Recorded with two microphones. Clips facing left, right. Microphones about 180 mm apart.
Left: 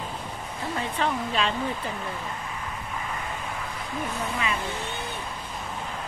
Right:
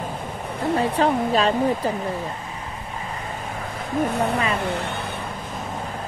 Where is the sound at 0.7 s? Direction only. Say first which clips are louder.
Right 7 dB; 40° right (ahead or behind).